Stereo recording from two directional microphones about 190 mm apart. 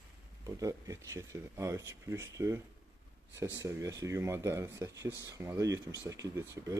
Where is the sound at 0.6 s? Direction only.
15° right (ahead or behind).